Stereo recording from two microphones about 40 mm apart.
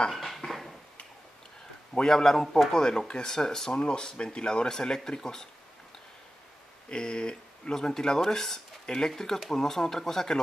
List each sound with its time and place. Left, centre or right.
0.1 s a sound: centre
2.0 s speech: centre
6.9 s speech: left